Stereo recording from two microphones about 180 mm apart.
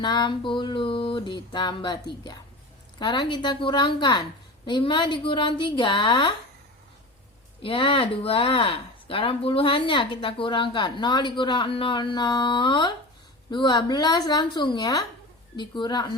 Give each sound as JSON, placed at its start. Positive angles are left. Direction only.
{"t": 0.0, "sound": "speech", "side_deg": 25}
{"t": 7.6, "sound": "speech", "side_deg": 30}